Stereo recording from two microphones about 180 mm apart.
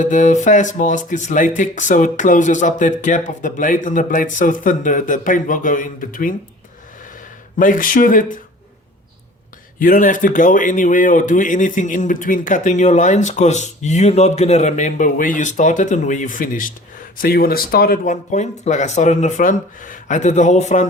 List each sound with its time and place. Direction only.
0.0 s speech: 45° left (ahead or behind)
7.6 s speech: 50° left (ahead or behind)
9.7 s speech: 50° left (ahead or behind)